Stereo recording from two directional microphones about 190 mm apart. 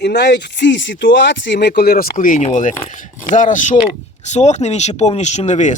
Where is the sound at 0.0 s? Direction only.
60° left (ahead or behind).